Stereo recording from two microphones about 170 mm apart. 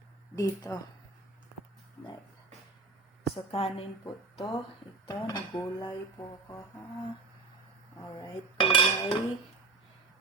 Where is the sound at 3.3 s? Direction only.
35° left (ahead or behind).